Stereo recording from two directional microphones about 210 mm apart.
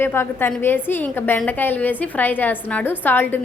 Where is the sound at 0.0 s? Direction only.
10° left (ahead or behind).